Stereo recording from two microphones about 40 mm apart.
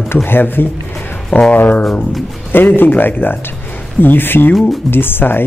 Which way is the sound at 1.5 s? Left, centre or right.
Left.